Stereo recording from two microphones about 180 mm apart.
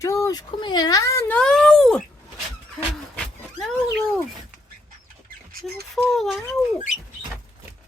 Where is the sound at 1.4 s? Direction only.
5° left (ahead or behind).